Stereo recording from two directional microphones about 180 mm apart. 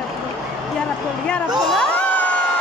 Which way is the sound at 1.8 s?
10° left (ahead or behind).